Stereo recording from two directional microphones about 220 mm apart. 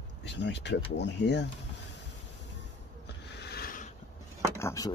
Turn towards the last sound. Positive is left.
turn(degrees=15)  # may be behind; listen again after turning